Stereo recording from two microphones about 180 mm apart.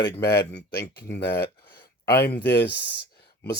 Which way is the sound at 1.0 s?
65° left (ahead or behind).